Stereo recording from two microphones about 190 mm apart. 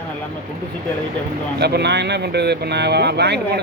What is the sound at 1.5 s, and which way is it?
Speech, 60° right (ahead or behind).